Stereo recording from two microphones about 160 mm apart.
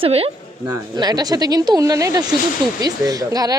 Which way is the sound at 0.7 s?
25° right (ahead or behind).